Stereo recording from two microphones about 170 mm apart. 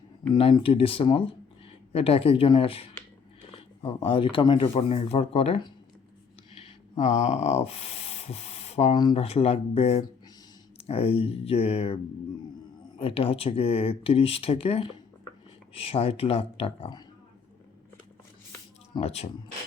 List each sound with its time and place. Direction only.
0.3 s speech: 30° left (ahead or behind)
7.0 s speech: 40° left (ahead or behind)
9.0 s speech: 25° left (ahead or behind)
9.2 s speech: 35° left (ahead or behind)
13.0 s speech: 35° left (ahead or behind)
18.9 s speech: 35° left (ahead or behind)